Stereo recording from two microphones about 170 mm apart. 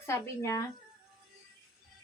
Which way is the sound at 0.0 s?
15° left (ahead or behind).